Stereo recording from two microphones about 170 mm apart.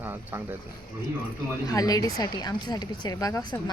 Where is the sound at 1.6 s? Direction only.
20° left (ahead or behind).